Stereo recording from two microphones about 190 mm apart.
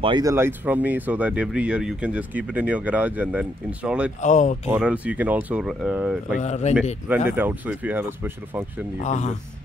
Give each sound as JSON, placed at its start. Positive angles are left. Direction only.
{"t": 0.0, "sound": "speech", "side_deg": -20}
{"t": 4.2, "sound": "speech", "side_deg": 40}
{"t": 4.6, "sound": "speech", "side_deg": -5}
{"t": 6.3, "sound": "speech", "side_deg": 35}
{"t": 7.1, "sound": "speech", "side_deg": -10}
{"t": 9.0, "sound": "speech", "side_deg": 40}